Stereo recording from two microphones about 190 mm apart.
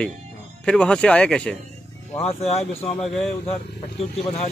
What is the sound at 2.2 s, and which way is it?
Speech, 35° left (ahead or behind).